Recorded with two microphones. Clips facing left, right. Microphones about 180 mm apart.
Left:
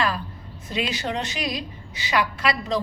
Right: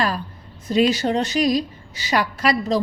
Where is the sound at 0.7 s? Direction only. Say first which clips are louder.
Right 9 dB; 40° right (ahead or behind).